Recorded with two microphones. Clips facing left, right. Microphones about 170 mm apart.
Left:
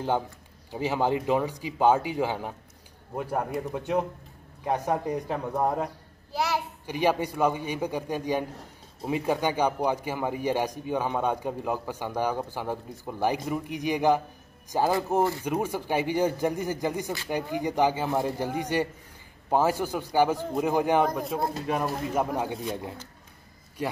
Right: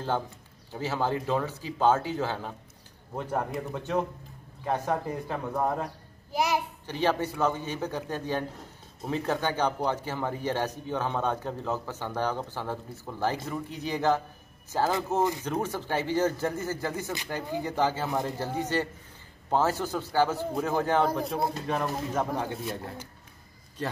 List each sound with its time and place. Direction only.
0.7 s a man's voice: 15° left (ahead or behind)
6.3 s a child's voice: 15° right (ahead or behind)
6.9 s a man's voice: 10° left (ahead or behind)
21.1 s a man's voice: centre (ahead or behind)
23.8 s a man's voice: 10° left (ahead or behind)